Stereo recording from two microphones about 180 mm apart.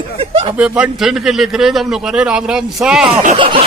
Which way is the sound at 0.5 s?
5° right (ahead or behind).